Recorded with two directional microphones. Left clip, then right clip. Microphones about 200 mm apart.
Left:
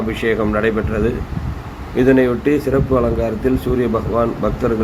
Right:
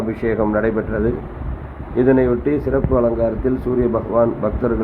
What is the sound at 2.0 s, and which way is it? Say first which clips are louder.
A man's voice: left 1 dB; 10° left (ahead or behind).